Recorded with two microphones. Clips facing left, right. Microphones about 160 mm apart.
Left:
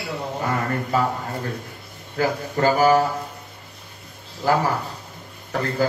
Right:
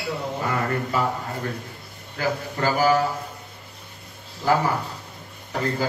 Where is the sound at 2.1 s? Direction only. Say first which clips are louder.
Left 4 dB; 35° left (ahead or behind).